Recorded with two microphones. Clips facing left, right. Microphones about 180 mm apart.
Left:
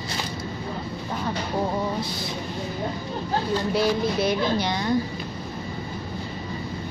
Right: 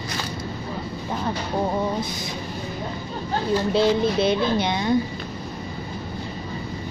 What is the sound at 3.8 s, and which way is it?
Speech, 25° right (ahead or behind).